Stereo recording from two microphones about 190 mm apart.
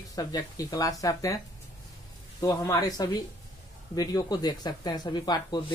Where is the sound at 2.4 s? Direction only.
20° left (ahead or behind).